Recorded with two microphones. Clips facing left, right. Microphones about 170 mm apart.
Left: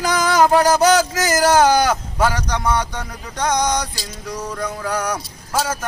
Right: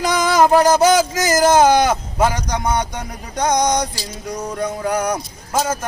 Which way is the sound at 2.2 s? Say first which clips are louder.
Right 1 dB; 25° right (ahead or behind).